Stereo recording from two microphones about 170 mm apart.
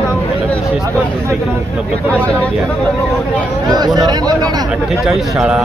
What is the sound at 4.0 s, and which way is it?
Speech, 25° right (ahead or behind).